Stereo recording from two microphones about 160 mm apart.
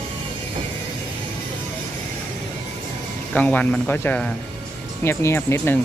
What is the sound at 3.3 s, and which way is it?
Speech, 10° left (ahead or behind).